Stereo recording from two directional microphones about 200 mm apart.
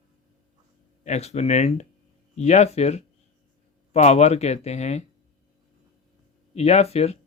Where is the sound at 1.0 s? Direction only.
35° left (ahead or behind).